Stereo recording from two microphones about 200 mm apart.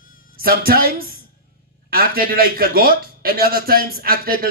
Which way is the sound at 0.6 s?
50° right (ahead or behind).